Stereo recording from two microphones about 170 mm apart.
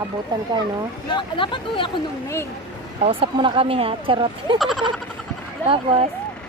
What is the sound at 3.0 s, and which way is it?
Speech, 35° right (ahead or behind).